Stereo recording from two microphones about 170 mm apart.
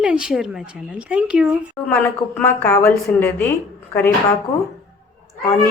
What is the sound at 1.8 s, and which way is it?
Speech, 10° left (ahead or behind).